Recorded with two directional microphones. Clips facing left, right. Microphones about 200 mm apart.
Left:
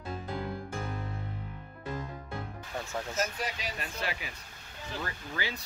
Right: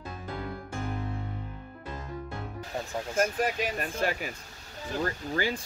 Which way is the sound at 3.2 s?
50° right (ahead or behind).